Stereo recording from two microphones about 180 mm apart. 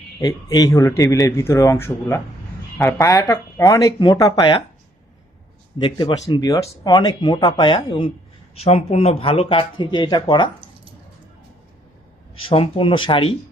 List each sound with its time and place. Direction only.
0.2 s speech: 20° left (ahead or behind)
5.8 s speech: 25° left (ahead or behind)
12.5 s speech: 30° left (ahead or behind)